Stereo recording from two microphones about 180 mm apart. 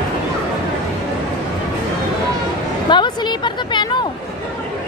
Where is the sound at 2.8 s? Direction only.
25° left (ahead or behind).